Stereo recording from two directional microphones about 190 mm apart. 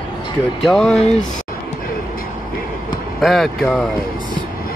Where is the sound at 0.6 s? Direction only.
Centre (ahead or behind).